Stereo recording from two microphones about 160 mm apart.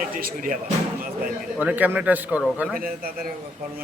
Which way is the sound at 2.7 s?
65° right (ahead or behind).